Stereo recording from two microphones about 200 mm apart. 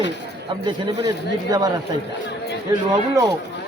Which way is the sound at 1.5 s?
20° right (ahead or behind).